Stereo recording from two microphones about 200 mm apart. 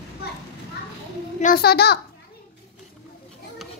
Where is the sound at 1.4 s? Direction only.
50° left (ahead or behind).